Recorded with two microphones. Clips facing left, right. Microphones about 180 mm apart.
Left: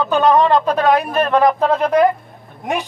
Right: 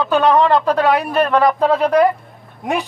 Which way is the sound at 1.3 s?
15° left (ahead or behind).